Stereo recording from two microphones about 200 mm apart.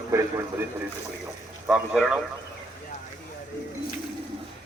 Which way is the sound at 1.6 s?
5° right (ahead or behind).